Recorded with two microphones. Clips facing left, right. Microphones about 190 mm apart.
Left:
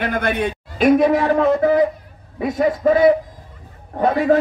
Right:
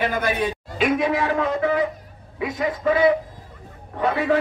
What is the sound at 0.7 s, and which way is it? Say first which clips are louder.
A man's voice: left 7 dB; 40° left (ahead or behind).